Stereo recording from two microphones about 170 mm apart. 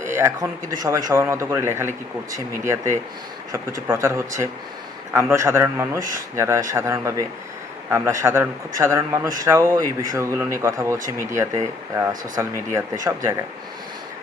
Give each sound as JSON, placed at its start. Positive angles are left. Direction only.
{"t": 0.0, "sound": "a sound", "side_deg": -15}
{"t": 0.8, "sound": "speech", "side_deg": -20}
{"t": 12.7, "sound": "speech", "side_deg": -15}